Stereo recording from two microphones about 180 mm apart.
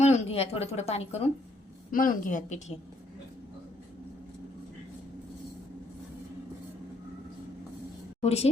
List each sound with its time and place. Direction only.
0.0 s speech: 35° left (ahead or behind)
1.9 s a woman's voice: 50° left (ahead or behind)
8.2 s speech: 35° left (ahead or behind)